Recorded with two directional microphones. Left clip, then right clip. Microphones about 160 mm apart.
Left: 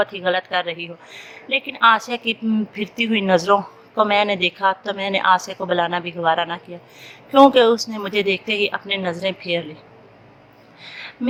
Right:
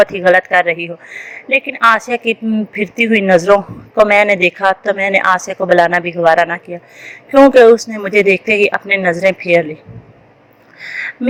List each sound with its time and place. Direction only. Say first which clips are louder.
0.0 s speech: right 11 dB; 30° right (ahead or behind)